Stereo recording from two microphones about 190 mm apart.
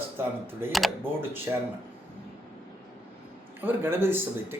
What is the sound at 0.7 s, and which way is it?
Speech, centre (ahead or behind).